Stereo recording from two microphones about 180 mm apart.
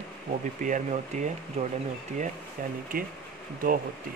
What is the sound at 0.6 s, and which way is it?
Speech, 45° right (ahead or behind).